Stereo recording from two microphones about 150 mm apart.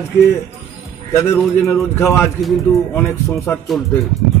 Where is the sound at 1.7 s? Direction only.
20° left (ahead or behind).